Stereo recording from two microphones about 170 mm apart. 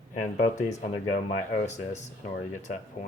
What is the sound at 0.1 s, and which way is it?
Speech, 50° left (ahead or behind).